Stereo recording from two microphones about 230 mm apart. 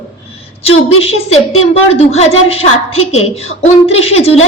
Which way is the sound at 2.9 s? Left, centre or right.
Left.